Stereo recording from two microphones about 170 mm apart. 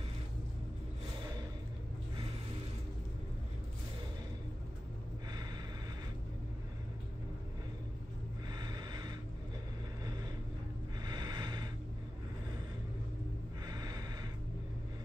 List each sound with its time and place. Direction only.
8.5 s snort: 25° right (ahead or behind)
11.1 s snort: 25° right (ahead or behind)
13.7 s snort: 20° right (ahead or behind)